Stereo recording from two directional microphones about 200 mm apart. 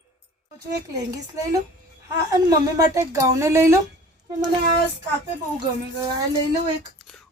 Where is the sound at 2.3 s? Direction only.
20° right (ahead or behind).